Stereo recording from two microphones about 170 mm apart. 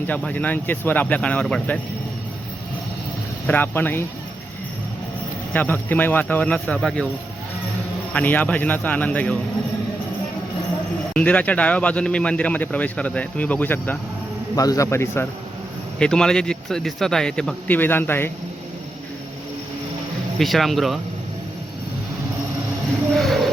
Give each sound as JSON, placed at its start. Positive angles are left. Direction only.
{"t": 0.1, "sound": "speech", "side_deg": 10}
{"t": 3.4, "sound": "speech", "side_deg": 10}
{"t": 5.5, "sound": "speech", "side_deg": 10}
{"t": 8.1, "sound": "speech", "side_deg": 10}
{"t": 11.1, "sound": "speech", "side_deg": 5}
{"t": 14.5, "sound": "speech", "side_deg": 20}
{"t": 20.4, "sound": "speech", "side_deg": 0}
{"t": 23.1, "sound": "train", "side_deg": 0}